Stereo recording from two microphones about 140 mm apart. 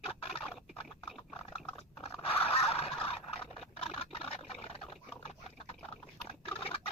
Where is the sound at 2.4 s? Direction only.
45° left (ahead or behind).